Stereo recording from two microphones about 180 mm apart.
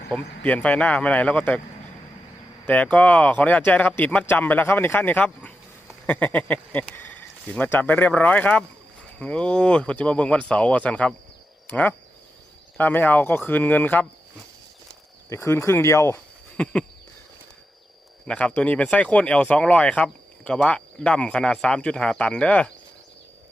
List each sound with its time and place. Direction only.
0.1 s speech: 5° left (ahead or behind)
2.6 s speech: 5° left (ahead or behind)
15.3 s speech: 15° left (ahead or behind)
18.3 s speech: 5° left (ahead or behind)